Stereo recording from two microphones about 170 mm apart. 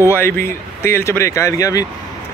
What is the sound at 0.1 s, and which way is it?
Speech, 15° left (ahead or behind).